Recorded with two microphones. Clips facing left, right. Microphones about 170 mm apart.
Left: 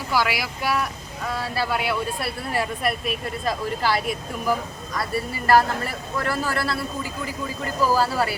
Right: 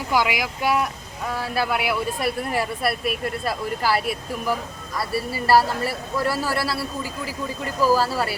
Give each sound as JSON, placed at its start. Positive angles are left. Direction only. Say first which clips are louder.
{"t": 0.1, "sound": "a man's voice", "louder": "right 2 dB", "side_deg": -20}